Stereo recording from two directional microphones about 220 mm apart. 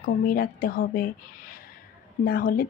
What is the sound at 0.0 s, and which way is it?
Speech, 40° left (ahead or behind).